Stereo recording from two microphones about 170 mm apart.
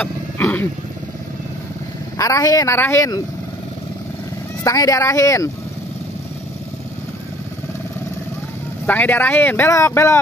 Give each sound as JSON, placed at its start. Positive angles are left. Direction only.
{"t": 0.0, "sound": "speech", "side_deg": 10}
{"t": 2.1, "sound": "speech", "side_deg": 20}
{"t": 4.6, "sound": "speech", "side_deg": 20}
{"t": 8.8, "sound": "speech", "side_deg": 10}